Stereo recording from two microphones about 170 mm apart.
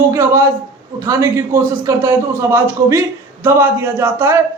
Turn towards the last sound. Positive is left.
turn(degrees=-10)  # may be behind; listen again after turning